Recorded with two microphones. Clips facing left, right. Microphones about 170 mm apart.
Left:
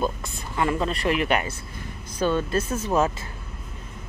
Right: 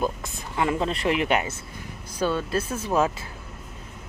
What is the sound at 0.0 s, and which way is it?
Speech, 15° right (ahead or behind).